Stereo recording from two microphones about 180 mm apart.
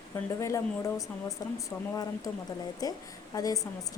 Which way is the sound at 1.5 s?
20° left (ahead or behind).